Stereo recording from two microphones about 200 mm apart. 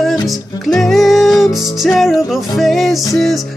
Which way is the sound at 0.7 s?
Centre (ahead or behind).